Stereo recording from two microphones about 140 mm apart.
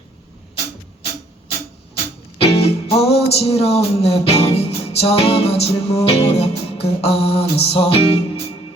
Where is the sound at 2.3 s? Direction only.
45° left (ahead or behind).